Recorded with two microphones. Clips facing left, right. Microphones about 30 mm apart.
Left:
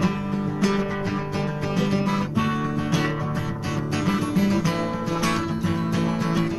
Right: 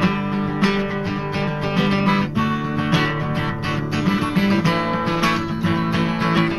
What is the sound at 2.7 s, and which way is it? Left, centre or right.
Music, right.